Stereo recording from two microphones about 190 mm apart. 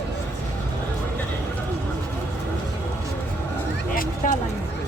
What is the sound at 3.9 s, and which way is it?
Vehicle, 45° left (ahead or behind).